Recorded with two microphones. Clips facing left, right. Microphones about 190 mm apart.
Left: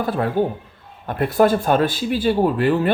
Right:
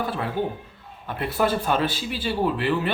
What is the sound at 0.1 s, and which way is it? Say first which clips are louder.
Speech: left 7 dB; 45° left (ahead or behind).